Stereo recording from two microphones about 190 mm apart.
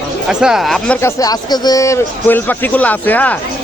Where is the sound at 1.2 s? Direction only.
20° left (ahead or behind).